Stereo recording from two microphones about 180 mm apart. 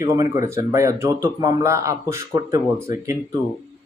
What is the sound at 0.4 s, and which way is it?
Speech, 15° right (ahead or behind).